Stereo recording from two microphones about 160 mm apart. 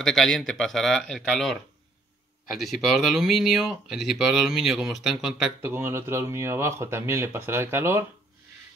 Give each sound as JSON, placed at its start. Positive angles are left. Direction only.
{"t": 0.0, "sound": "speech", "side_deg": 5}
{"t": 5.6, "sound": "speech", "side_deg": -15}